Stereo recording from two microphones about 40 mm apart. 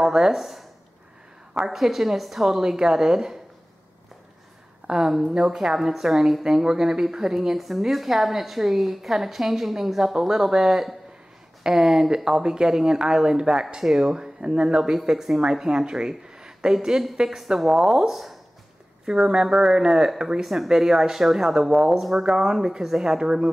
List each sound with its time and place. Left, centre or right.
0.0 s a woman's voice: centre
4.8 s a woman's voice: centre
19.0 s a woman's voice: centre